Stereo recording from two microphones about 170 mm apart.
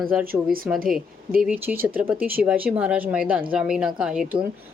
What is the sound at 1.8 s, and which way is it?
A woman's voice, 10° right (ahead or behind).